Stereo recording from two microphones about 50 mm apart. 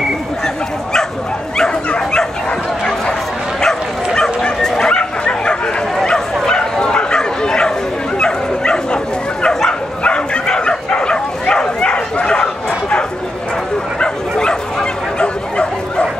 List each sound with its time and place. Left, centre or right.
3.6 s bow-wow: centre
13.9 s bow-wow: centre